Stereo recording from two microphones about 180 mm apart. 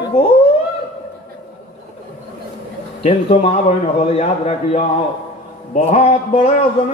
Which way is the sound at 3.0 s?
35° left (ahead or behind).